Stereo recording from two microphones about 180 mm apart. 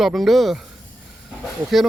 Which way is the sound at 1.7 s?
Centre (ahead or behind).